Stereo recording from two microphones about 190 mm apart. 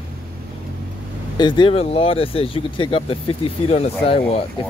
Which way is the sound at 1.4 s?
25° left (ahead or behind).